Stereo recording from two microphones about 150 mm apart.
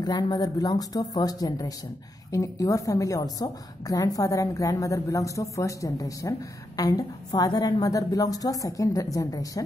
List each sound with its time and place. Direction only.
0.0 s a woman's voice: 25° left (ahead or behind)